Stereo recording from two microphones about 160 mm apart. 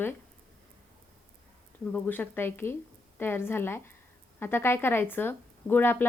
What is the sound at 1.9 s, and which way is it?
A woman's voice, 10° left (ahead or behind).